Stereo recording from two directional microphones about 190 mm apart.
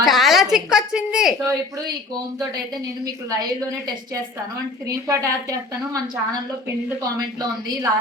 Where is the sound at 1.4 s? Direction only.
20° right (ahead or behind).